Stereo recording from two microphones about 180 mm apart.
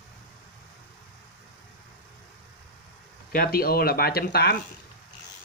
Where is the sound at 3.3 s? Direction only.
55° left (ahead or behind).